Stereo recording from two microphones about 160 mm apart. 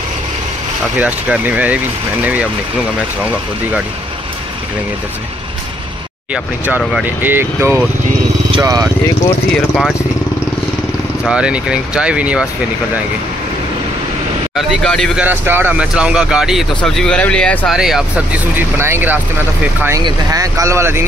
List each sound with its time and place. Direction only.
0.9 s speech: 10° right (ahead or behind)
6.3 s speech: 10° right (ahead or behind)
8.5 s speech: 25° right (ahead or behind)
9.5 s speech: centre (ahead or behind)
11.2 s speech: 5° right (ahead or behind)
14.5 s speech: 5° left (ahead or behind)
15.2 s speech: 10° right (ahead or behind)